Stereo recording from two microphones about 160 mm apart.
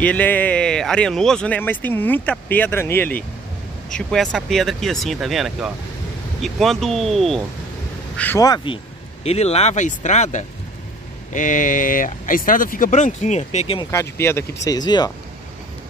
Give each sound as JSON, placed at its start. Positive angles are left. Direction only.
{"t": 0.0, "sound": "speech", "side_deg": 10}
{"t": 3.9, "sound": "speech", "side_deg": 5}
{"t": 8.4, "sound": "speech", "side_deg": 25}
{"t": 9.2, "sound": "speech", "side_deg": 40}
{"t": 13.8, "sound": "speech", "side_deg": 15}